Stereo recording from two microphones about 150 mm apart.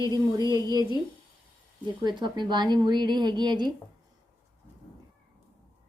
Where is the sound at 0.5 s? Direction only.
25° right (ahead or behind).